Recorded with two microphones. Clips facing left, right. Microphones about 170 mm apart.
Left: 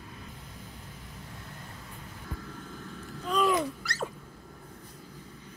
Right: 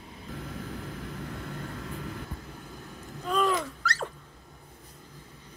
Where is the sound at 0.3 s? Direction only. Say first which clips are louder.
Right 9 dB; 90° right.